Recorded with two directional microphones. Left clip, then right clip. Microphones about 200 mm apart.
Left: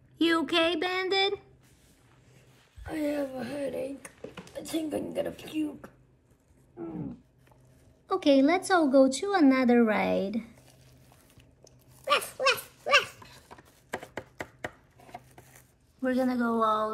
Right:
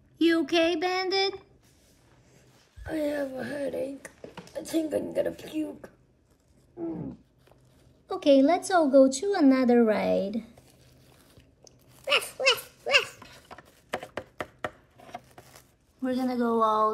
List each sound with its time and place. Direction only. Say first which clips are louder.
0.2 s female singing: right 2 dB; centre (ahead or behind)
2.8 s speech: right 2 dB; 50° right (ahead or behind)
8.1 s speech: right 2 dB; 10° right (ahead or behind)
12.0 s dog: right 1 dB; 25° left (ahead or behind)
14.6 s chopping: right 4 dB; centre (ahead or behind)
16.0 s speech: left 1 dB; 15° right (ahead or behind)